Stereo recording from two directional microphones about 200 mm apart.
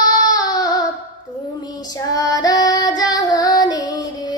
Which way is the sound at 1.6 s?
20° left (ahead or behind).